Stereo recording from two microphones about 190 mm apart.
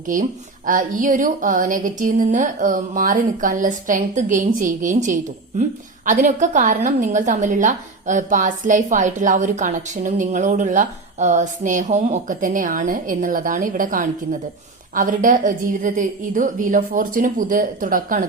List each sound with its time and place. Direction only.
0.1 s a woman's voice: 45° right (ahead or behind)